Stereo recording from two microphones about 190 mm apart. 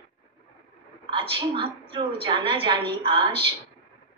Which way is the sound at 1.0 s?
25° right (ahead or behind).